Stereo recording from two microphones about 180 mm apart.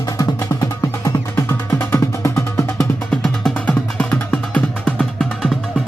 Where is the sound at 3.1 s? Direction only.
5° left (ahead or behind).